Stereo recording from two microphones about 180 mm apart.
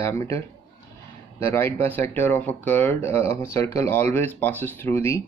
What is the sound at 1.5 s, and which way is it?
Speech, 15° left (ahead or behind).